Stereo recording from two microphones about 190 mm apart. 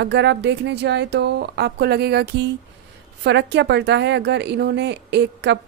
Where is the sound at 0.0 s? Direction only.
65° right (ahead or behind).